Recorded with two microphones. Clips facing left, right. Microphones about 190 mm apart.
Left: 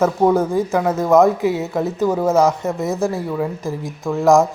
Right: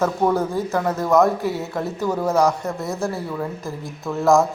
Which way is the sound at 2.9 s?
Centre (ahead or behind).